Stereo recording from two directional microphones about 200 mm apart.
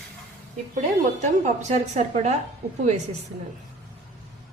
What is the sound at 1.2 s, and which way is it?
A woman's voice, 35° right (ahead or behind).